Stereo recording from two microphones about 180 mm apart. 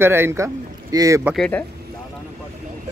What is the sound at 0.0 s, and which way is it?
Speech, 15° right (ahead or behind).